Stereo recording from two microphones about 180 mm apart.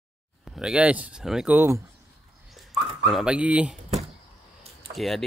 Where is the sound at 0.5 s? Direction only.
5° right (ahead or behind).